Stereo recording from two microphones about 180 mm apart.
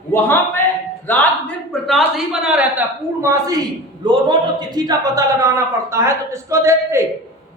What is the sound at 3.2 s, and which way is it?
A man's voice, 20° right (ahead or behind).